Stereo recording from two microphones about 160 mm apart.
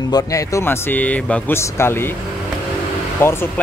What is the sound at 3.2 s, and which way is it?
Speech, 15° left (ahead or behind).